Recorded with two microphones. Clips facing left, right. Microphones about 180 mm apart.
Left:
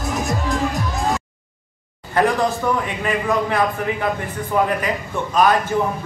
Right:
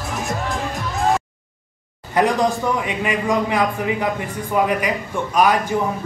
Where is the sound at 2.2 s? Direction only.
15° right (ahead or behind).